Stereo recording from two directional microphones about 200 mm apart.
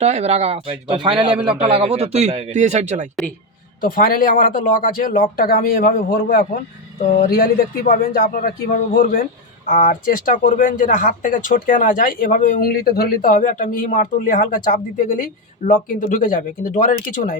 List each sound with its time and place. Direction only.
0.0 s speech: 30° right (ahead or behind)
1.3 s a man's voice: 5° right (ahead or behind)
1.6 s speech: 30° right (ahead or behind)
3.8 s speech: 45° left (ahead or behind)